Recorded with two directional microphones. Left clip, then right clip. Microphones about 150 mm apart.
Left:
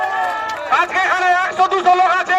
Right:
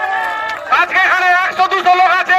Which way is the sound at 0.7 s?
15° right (ahead or behind).